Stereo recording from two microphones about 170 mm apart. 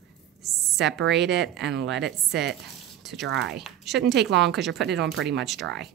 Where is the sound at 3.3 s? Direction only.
85° right.